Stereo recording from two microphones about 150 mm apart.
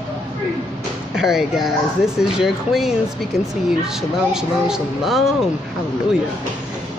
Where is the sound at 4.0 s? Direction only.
5° right (ahead or behind).